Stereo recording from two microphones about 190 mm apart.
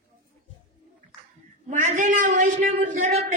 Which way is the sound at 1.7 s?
40° right (ahead or behind).